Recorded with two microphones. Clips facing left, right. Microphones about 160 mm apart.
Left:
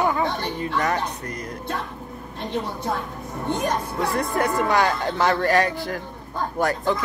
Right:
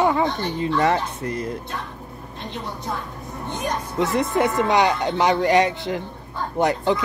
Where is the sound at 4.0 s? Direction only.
20° right (ahead or behind).